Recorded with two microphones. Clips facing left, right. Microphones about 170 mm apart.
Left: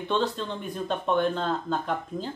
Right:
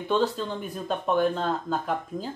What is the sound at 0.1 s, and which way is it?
Speech, 5° right (ahead or behind).